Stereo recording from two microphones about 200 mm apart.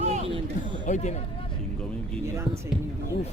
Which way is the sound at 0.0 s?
30° right (ahead or behind).